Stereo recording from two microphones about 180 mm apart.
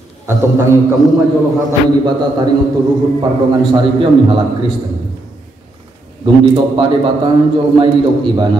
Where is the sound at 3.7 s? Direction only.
30° right (ahead or behind).